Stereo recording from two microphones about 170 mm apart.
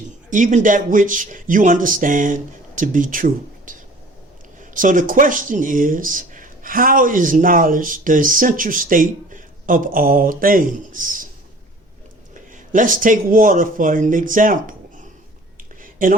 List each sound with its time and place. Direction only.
0.3 s speech: 50° right (ahead or behind)
12.3 s speech: 50° right (ahead or behind)
15.8 s a sound: 55° right (ahead or behind)